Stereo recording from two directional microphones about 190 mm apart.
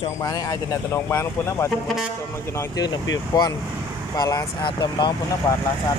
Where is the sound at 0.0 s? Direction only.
20° left (ahead or behind).